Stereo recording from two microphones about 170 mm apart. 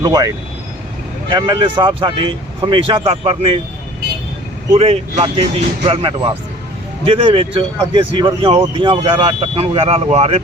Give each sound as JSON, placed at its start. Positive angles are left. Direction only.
{"t": 0.0, "sound": "speech", "side_deg": -20}
{"t": 1.3, "sound": "speech", "side_deg": -25}
{"t": 4.7, "sound": "speech", "side_deg": -35}